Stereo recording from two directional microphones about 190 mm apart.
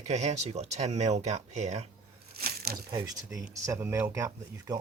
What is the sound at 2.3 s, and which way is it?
Crumpling, 50° right (ahead or behind).